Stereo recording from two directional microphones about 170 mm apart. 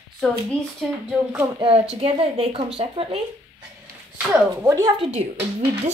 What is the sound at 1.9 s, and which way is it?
A woman's voice, 35° right (ahead or behind).